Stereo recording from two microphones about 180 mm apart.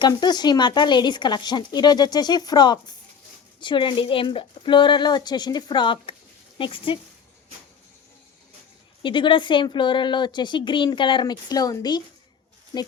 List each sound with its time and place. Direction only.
0.0 s speech: 25° left (ahead or behind)
9.0 s speech: 25° left (ahead or behind)